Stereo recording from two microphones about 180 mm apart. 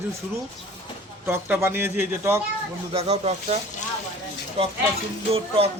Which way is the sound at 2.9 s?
35° right (ahead or behind).